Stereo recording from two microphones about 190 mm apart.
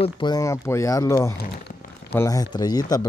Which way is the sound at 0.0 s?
25° left (ahead or behind).